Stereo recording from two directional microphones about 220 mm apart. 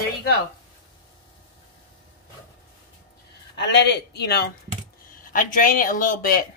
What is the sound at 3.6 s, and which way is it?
Speech, 50° left (ahead or behind).